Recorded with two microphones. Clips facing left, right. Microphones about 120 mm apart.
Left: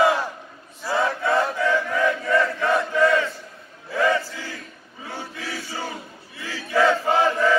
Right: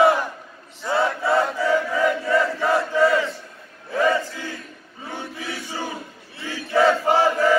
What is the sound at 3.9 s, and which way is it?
Chant, 20° right (ahead or behind).